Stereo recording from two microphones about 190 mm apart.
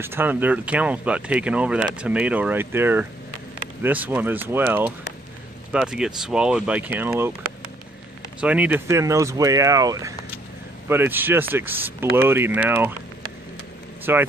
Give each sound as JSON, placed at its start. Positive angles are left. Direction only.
{"t": 0.0, "sound": "speech", "side_deg": -10}
{"t": 8.4, "sound": "speech", "side_deg": -5}
{"t": 14.1, "sound": "speech", "side_deg": -10}